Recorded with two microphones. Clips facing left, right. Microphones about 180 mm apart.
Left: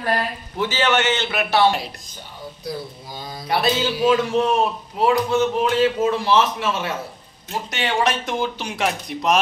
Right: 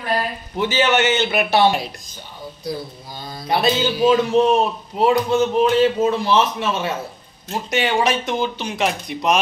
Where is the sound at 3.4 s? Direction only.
20° right (ahead or behind).